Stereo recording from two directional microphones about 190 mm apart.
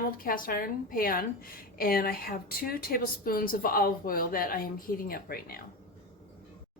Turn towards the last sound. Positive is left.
turn(degrees=50)  # may be behind; listen again after turning